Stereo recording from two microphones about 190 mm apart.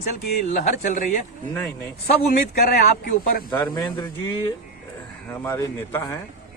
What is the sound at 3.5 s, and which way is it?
Speech, 15° left (ahead or behind).